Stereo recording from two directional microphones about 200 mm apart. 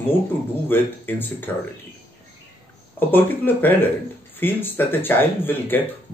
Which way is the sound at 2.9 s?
10° left (ahead or behind).